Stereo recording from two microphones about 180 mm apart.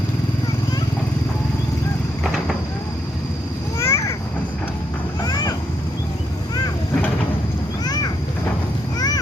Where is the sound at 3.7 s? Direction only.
15° left (ahead or behind).